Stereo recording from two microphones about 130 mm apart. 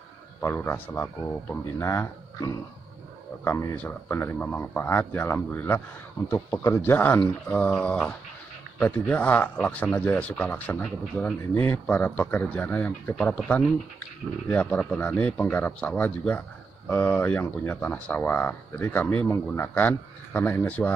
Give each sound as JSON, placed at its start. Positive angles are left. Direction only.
{"t": 0.4, "sound": "speech", "side_deg": 15}